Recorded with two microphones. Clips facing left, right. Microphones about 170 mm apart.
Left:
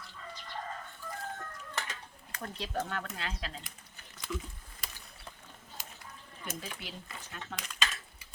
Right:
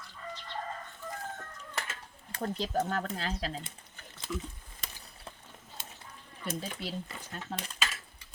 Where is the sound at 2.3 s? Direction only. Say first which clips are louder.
Right 5 dB; 30° right (ahead or behind).